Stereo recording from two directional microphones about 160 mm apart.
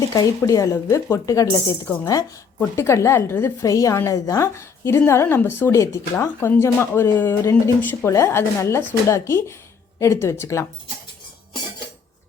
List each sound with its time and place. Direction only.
0.1 s a woman's voice: 20° left (ahead or behind)